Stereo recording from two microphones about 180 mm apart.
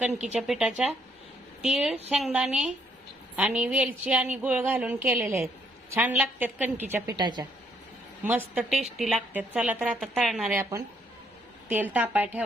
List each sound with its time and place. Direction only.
0.1 s speech: 40° right (ahead or behind)
0.3 s a woman's voice: 5° right (ahead or behind)
7.2 s a woman's voice: 25° right (ahead or behind)
8.2 s speech: 10° right (ahead or behind)
9.0 s a woman's voice: centre (ahead or behind)